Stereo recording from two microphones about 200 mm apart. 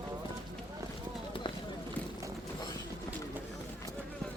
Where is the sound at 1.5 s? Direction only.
25° left (ahead or behind).